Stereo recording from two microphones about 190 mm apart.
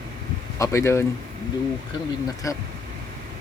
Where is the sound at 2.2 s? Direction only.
15° left (ahead or behind).